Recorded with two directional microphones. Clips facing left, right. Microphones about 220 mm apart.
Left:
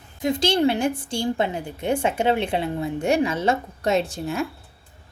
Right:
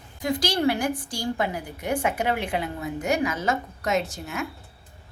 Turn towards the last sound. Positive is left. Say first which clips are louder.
# left 4 dB
turn(degrees=30)  # may be behind; listen again after turning